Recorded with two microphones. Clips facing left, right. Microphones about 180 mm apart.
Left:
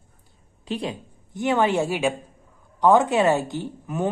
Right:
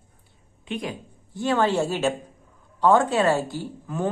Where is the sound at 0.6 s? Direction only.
30° left (ahead or behind).